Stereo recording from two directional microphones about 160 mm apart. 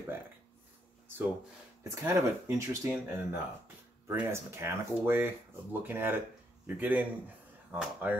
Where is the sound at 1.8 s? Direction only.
20° right (ahead or behind).